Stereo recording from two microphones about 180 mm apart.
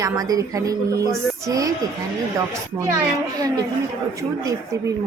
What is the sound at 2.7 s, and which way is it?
Speech, 20° right (ahead or behind).